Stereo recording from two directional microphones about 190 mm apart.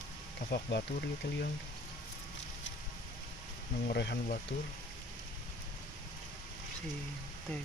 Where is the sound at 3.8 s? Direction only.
60° left (ahead or behind).